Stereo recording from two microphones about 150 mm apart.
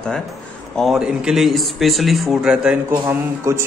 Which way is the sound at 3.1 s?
15° right (ahead or behind).